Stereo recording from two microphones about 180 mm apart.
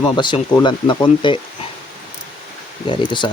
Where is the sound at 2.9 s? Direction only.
25° left (ahead or behind).